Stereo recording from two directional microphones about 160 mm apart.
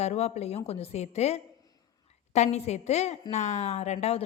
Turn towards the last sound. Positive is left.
turn(degrees=45)  # may be behind; listen again after turning